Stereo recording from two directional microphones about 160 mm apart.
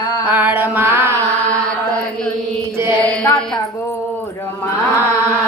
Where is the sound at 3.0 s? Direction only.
10° left (ahead or behind).